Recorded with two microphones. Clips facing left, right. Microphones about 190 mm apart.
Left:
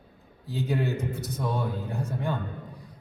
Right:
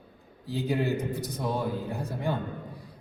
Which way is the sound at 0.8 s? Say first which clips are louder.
Right 1 dB; 35° right (ahead or behind).